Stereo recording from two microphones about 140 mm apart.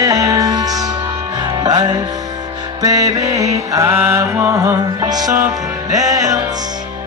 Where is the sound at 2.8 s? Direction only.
25° right (ahead or behind).